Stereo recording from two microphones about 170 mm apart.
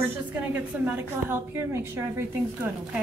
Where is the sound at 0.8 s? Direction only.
10° right (ahead or behind).